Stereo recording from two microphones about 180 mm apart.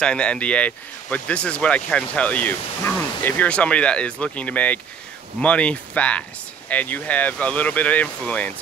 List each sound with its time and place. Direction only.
0.0 s speech: 5° left (ahead or behind)